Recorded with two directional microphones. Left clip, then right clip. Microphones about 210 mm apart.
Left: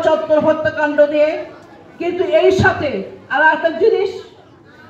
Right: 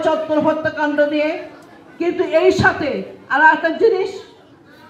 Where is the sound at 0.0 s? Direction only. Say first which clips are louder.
Left 3 dB; 30° right (ahead or behind).